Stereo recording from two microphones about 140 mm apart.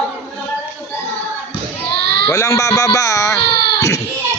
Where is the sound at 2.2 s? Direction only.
25° left (ahead or behind).